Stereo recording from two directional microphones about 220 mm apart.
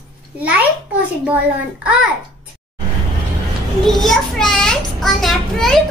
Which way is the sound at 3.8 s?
Centre (ahead or behind).